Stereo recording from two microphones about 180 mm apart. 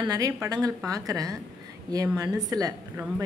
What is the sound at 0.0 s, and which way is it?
A woman's voice, 20° right (ahead or behind).